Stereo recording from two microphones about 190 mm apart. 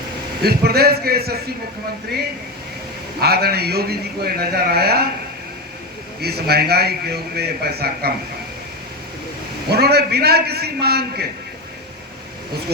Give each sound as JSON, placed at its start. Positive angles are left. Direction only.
{"t": 0.4, "sound": "a man's voice", "side_deg": -55}
{"t": 3.2, "sound": "a man's voice", "side_deg": -55}
{"t": 6.2, "sound": "a man's voice", "side_deg": -55}
{"t": 9.7, "sound": "a man's voice", "side_deg": -60}